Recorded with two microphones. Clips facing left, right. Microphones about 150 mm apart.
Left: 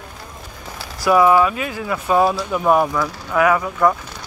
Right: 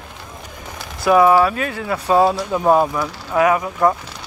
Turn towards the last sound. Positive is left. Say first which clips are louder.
# even
turn(degrees=-20)  # may be behind; listen again after turning